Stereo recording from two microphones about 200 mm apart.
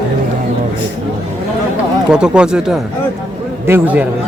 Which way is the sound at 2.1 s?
5° right (ahead or behind).